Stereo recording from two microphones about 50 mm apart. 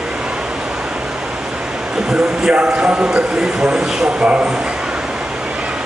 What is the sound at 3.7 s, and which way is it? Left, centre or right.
Speech, centre.